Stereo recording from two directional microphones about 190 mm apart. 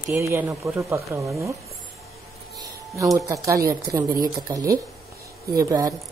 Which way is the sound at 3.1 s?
15° right (ahead or behind).